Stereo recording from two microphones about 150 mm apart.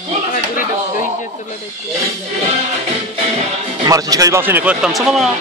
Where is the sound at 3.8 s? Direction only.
25° right (ahead or behind); by 5.3 s centre (ahead or behind).